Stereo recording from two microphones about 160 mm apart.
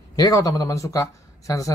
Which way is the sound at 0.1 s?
25° left (ahead or behind).